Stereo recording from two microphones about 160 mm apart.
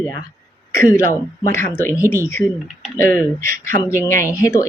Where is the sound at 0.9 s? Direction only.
15° left (ahead or behind).